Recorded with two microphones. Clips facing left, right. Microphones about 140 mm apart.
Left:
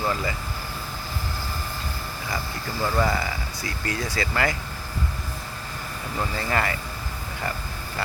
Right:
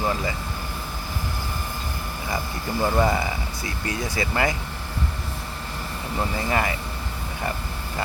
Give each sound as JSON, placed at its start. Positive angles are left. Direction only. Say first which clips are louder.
{"t": 0.0, "sound": "speech", "louder": "right 1 dB", "side_deg": -20}
{"t": 2.8, "sound": "speech", "louder": "right 2 dB", "side_deg": -20}
{"t": 6.1, "sound": "speech", "louder": "right 1 dB", "side_deg": -20}